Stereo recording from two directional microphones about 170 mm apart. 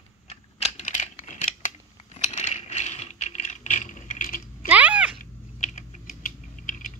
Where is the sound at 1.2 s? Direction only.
45° left (ahead or behind).